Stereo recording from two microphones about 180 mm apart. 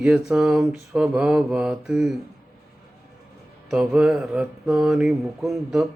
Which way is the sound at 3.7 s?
5° right (ahead or behind).